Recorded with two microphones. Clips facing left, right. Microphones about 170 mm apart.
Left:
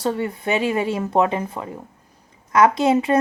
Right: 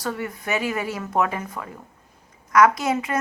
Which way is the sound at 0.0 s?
30° left (ahead or behind).